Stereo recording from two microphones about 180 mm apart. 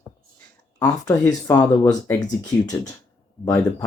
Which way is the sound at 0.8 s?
20° left (ahead or behind).